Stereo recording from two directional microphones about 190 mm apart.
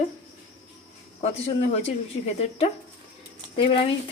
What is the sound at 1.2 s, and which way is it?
Speech, 35° left (ahead or behind).